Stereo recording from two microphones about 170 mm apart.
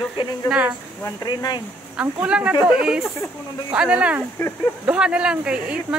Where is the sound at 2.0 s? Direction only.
5° right (ahead or behind).